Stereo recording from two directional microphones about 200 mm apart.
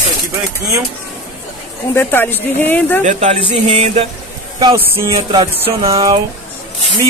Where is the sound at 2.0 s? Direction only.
10° left (ahead or behind).